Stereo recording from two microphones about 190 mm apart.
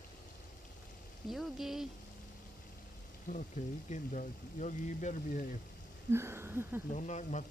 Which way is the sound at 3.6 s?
45° left (ahead or behind).